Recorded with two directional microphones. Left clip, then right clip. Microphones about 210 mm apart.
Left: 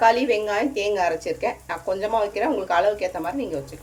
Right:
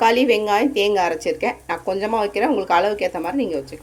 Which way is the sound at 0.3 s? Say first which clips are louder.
Right 5 dB; 45° right (ahead or behind).